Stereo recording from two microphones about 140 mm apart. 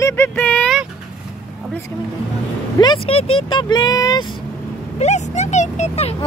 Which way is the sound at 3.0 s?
40° left (ahead or behind).